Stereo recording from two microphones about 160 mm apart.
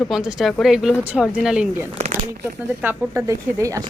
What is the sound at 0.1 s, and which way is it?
Speech, centre (ahead or behind).